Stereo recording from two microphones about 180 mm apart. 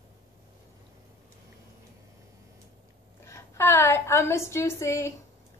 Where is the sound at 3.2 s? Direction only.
15° left (ahead or behind).